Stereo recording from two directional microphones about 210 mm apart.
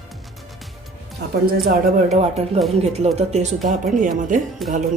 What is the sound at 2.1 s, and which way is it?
Speech, 30° right (ahead or behind).